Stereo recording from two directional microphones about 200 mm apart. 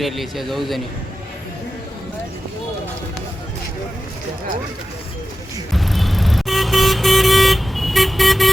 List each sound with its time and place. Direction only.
0.0 s speech: centre (ahead or behind)
5.7 s vehicle: centre (ahead or behind)